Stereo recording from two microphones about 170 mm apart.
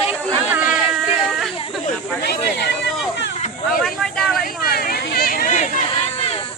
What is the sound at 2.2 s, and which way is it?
Speech, 75° left (ahead or behind).